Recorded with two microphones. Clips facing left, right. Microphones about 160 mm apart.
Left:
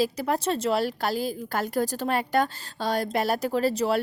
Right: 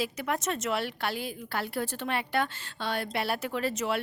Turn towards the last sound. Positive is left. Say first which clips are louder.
# left 6 dB
turn(degrees=35)  # may be behind; listen again after turning